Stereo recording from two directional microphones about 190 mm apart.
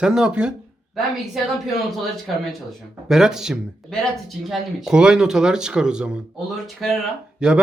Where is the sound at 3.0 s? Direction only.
5° right (ahead or behind).